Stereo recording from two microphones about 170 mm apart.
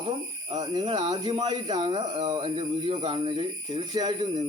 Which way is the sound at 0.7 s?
25° right (ahead or behind).